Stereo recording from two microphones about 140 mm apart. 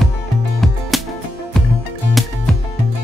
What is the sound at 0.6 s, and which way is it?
Music, centre (ahead or behind).